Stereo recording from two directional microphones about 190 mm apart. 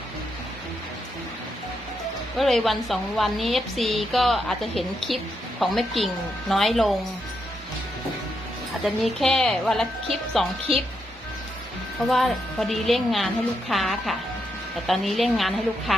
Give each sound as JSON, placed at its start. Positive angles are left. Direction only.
{"t": 2.4, "sound": "a woman's voice", "side_deg": 0}
{"t": 8.8, "sound": "a woman's voice", "side_deg": 0}
{"t": 12.0, "sound": "a woman's voice", "side_deg": 0}